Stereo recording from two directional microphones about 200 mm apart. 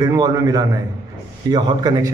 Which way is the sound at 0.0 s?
20° right (ahead or behind).